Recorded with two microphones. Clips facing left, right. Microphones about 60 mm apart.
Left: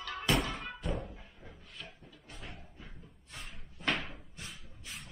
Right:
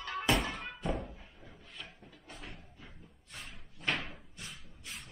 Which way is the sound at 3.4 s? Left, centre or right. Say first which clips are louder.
Even; centre.